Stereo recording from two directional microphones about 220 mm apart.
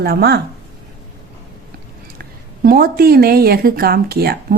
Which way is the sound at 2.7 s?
40° right (ahead or behind).